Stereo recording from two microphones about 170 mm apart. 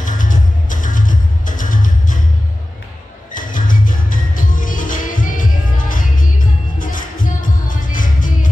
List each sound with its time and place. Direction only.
0.0 s music: 50° left (ahead or behind)
3.3 s music: 50° left (ahead or behind)